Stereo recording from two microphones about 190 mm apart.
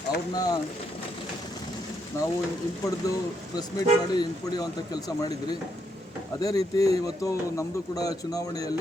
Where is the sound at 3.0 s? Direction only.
20° left (ahead or behind).